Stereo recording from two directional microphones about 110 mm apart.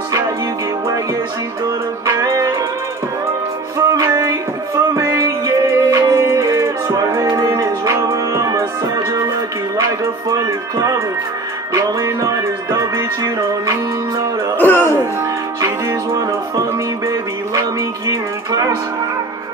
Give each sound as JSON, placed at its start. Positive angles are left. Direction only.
{"t": 2.0, "sound": "music", "side_deg": -30}
{"t": 3.7, "sound": "music", "side_deg": -30}
{"t": 10.3, "sound": "music", "side_deg": -35}
{"t": 14.6, "sound": "music", "side_deg": 20}
{"t": 15.6, "sound": "music", "side_deg": -30}